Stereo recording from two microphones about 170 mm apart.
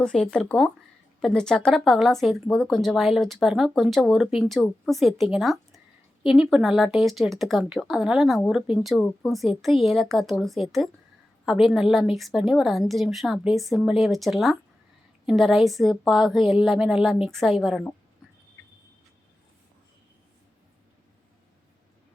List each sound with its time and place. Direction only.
0.0 s speech: 5° left (ahead or behind)